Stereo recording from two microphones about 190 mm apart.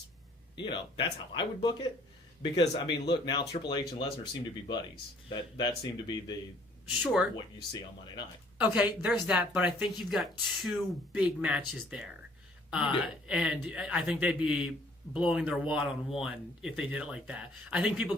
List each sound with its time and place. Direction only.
0.5 s speech: 25° left (ahead or behind)
5.3 s speech: 20° left (ahead or behind)
7.0 s speech: 5° right (ahead or behind)
7.3 s speech: 25° left (ahead or behind)
8.6 s speech: 5° right (ahead or behind)
13.2 s speech: 5° right (ahead or behind)